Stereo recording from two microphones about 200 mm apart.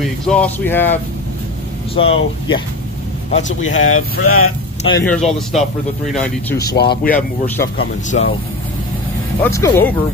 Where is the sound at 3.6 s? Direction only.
90° left.